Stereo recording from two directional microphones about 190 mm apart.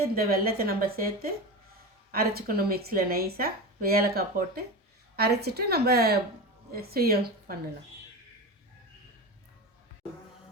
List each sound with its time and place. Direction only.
0.0 s a woman's voice: 50° right (ahead or behind)